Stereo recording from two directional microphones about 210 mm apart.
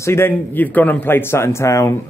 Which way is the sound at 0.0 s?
10° left (ahead or behind).